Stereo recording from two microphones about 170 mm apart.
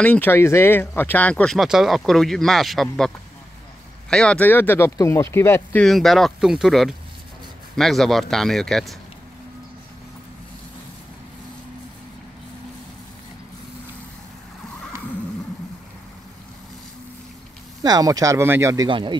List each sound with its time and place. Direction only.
0.0 s speech: 10° left (ahead or behind)
4.1 s speech: 5° left (ahead or behind)
5.9 s speech: centre (ahead or behind)
17.8 s speech: 20° right (ahead or behind)